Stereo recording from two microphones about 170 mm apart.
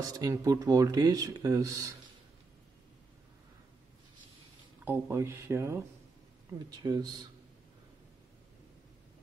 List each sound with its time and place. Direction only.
0.2 s speech: 20° right (ahead or behind)
4.8 s speech: 10° right (ahead or behind)